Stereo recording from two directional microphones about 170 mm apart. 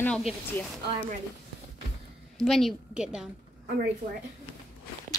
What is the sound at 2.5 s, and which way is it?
Speech, centre (ahead or behind).